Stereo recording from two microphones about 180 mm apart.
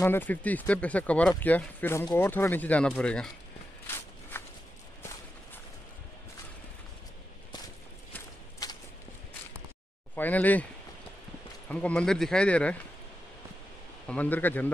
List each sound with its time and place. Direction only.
0.0 s speech: 10° left (ahead or behind)
3.8 s walk: 10° left (ahead or behind)
8.6 s a sound: 20° left (ahead or behind)
10.1 s speech: 10° left (ahead or behind)
11.7 s speech: 5° left (ahead or behind)
14.0 s speech: 10° left (ahead or behind)